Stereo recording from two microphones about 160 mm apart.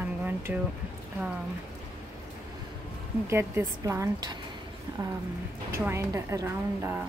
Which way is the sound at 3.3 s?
15° right (ahead or behind).